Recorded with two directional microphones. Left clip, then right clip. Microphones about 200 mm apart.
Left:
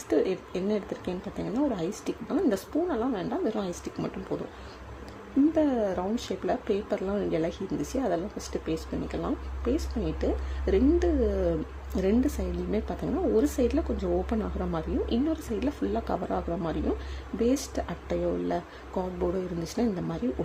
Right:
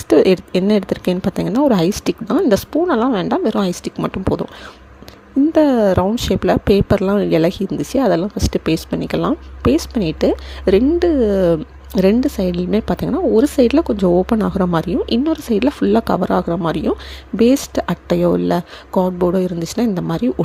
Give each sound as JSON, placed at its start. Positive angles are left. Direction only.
{"t": 0.1, "sound": "a woman's voice", "side_deg": -40}
{"t": 5.5, "sound": "a woman's voice", "side_deg": -35}